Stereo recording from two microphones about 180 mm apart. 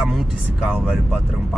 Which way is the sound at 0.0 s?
Centre (ahead or behind).